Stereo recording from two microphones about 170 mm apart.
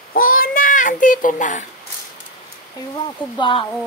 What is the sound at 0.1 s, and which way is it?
Child singing, 55° left (ahead or behind).